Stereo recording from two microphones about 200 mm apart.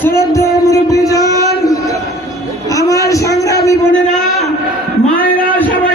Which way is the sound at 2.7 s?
15° left (ahead or behind).